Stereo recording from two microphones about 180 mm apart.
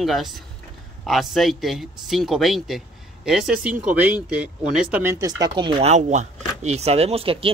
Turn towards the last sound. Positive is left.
turn(degrees=-30)  # may be behind; listen again after turning